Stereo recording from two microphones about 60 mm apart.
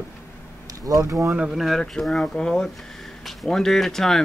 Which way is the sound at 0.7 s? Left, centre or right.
Right.